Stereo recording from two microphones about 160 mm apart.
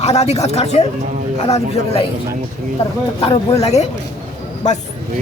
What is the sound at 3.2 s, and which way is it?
A man's voice, 40° left (ahead or behind).